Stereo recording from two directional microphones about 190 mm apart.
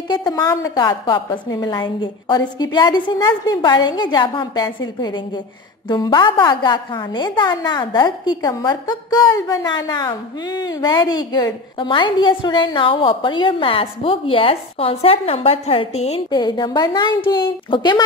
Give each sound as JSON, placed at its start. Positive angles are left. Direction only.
{"t": 0.1, "sound": "a woman's voice", "side_deg": 20}